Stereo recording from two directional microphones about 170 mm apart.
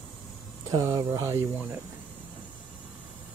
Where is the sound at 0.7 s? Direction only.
20° right (ahead or behind).